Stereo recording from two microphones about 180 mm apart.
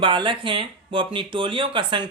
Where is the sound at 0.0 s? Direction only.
25° right (ahead or behind).